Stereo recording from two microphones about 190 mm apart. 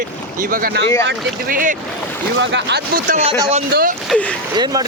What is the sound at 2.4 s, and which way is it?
Speech, 70° right (ahead or behind).